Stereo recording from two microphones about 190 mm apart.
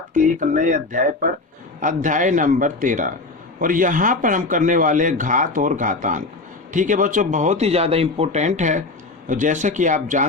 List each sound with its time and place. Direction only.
0.1 s a man's voice: 45° right (ahead or behind)